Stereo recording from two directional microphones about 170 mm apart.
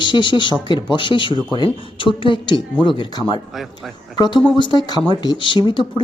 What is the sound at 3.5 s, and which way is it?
Speech, centre (ahead or behind).